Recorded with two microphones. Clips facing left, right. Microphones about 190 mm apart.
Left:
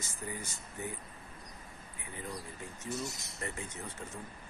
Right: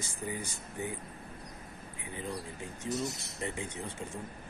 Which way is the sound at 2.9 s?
20° right (ahead or behind).